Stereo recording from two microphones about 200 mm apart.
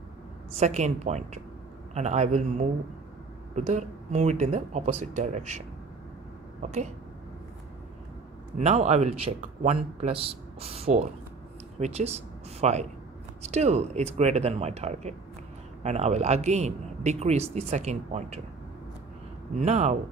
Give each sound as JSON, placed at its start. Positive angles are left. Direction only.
{"t": 0.5, "sound": "a man's voice", "side_deg": -35}
{"t": 6.6, "sound": "a man's voice", "side_deg": -35}
{"t": 8.5, "sound": "a man's voice", "side_deg": -35}
{"t": 19.6, "sound": "a man's voice", "side_deg": -35}